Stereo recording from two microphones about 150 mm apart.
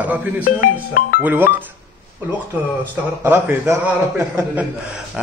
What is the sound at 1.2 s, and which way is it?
Speech, 15° right (ahead or behind).